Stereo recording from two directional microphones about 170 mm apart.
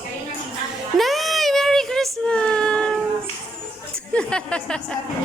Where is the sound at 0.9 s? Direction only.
Centre (ahead or behind).